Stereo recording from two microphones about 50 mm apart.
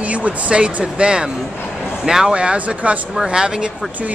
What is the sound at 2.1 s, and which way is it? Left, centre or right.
Speech, centre.